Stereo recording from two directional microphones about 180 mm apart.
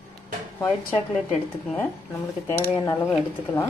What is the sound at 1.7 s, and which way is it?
A woman's voice, 15° left (ahead or behind).